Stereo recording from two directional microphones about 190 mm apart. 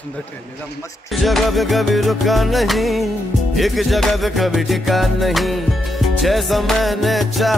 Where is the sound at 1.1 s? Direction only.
Centre (ahead or behind).